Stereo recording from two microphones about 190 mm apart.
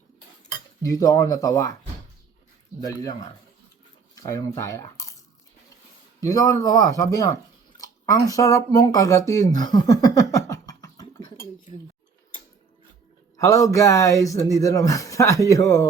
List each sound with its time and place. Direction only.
0.8 s speech: 15° left (ahead or behind)
4.1 s speech: 20° left (ahead or behind)
13.3 s speech: 15° left (ahead or behind)